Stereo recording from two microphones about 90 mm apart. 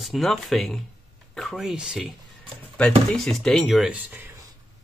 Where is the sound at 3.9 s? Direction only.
20° right (ahead or behind).